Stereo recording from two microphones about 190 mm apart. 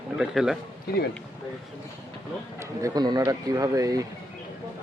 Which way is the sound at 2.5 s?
20° right (ahead or behind).